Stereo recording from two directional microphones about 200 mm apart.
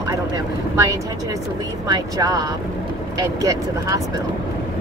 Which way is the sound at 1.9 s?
20° right (ahead or behind).